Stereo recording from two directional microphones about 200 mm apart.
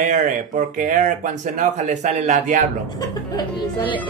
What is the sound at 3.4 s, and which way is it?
Speech, 20° left (ahead or behind).